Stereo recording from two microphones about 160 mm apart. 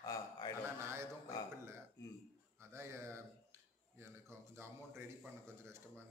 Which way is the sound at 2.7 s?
15° right (ahead or behind).